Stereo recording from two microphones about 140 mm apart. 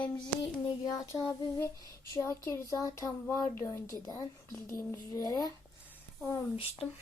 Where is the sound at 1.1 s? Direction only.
Centre (ahead or behind).